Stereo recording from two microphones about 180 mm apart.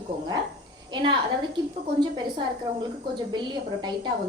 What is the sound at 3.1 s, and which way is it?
A woman's voice, 25° right (ahead or behind).